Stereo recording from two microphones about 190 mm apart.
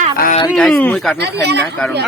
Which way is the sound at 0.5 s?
5° left (ahead or behind).